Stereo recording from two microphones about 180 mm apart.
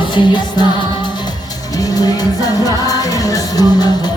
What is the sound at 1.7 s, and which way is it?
Music, 20° left (ahead or behind).